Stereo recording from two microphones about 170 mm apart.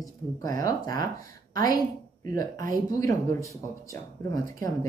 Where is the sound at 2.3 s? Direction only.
20° left (ahead or behind).